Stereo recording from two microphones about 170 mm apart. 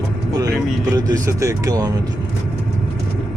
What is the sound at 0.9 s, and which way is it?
Speech, 20° right (ahead or behind).